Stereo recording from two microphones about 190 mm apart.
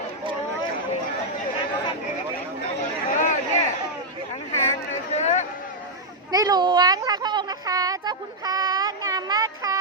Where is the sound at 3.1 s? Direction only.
40° left (ahead or behind).